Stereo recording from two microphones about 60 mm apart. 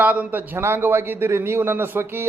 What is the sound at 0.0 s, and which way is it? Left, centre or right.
Speech, right.